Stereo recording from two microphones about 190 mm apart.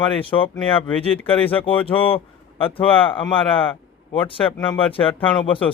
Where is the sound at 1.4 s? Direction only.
30° left (ahead or behind).